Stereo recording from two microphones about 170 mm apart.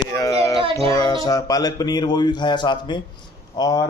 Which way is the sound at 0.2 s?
20° left (ahead or behind).